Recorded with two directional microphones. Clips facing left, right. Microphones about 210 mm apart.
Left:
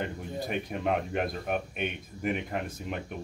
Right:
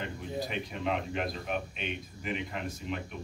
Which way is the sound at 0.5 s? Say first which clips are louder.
Left 7 dB; 55° left (ahead or behind).